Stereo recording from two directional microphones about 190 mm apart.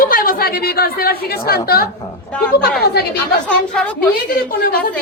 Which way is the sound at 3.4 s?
5° left (ahead or behind).